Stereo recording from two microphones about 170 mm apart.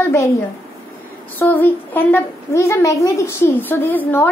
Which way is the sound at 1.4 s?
10° left (ahead or behind).